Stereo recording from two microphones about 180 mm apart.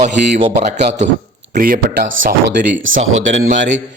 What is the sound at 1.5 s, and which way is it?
Speech, 50° right (ahead or behind).